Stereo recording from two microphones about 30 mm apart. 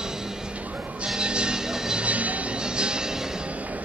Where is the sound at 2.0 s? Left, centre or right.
Right.